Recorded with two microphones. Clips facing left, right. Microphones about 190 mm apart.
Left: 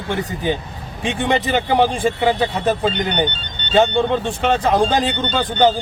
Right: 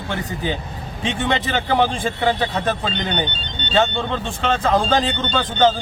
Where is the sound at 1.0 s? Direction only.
15° left (ahead or behind).